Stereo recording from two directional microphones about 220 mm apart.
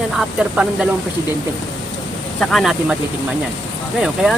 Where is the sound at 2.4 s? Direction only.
Centre (ahead or behind).